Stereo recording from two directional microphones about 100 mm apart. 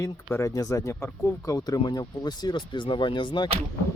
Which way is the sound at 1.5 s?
40° left (ahead or behind).